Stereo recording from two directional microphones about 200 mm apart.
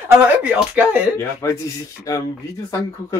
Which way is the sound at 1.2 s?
15° left (ahead or behind).